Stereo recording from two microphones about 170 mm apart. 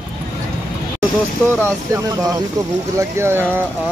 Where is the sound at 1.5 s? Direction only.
15° right (ahead or behind).